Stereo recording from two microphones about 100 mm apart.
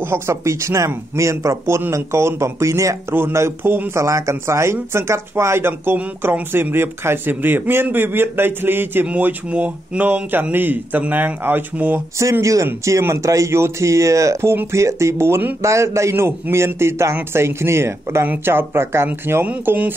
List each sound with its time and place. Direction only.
0.0 s speech: 25° right (ahead or behind)
12.2 s speech: 30° right (ahead or behind)